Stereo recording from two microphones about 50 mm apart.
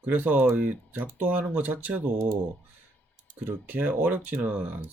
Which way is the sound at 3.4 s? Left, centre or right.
Right.